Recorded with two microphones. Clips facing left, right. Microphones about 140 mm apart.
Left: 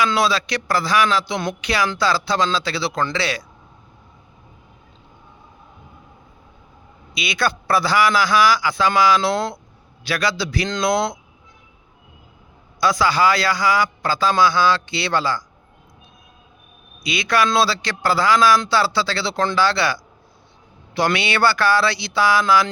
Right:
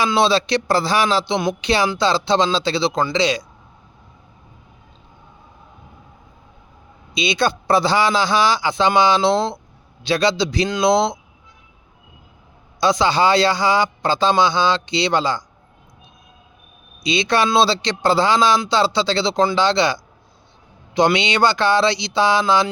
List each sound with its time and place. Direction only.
0.0 s speech: 25° right (ahead or behind)
7.1 s speech: 20° right (ahead or behind)
12.8 s speech: 25° right (ahead or behind)
17.0 s speech: 25° right (ahead or behind)